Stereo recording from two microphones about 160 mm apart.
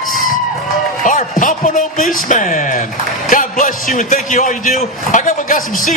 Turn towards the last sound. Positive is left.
turn(degrees=50)  # may be behind; listen again after turning